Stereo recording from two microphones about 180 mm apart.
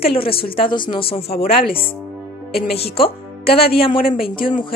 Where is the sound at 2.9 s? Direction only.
30° left (ahead or behind).